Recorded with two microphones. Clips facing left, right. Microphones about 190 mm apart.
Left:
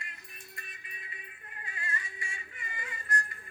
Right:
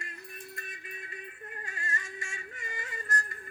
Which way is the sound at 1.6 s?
45° right (ahead or behind).